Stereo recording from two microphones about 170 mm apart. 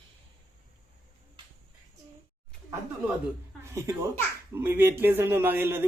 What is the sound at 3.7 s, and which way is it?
A man's voice, 15° right (ahead or behind).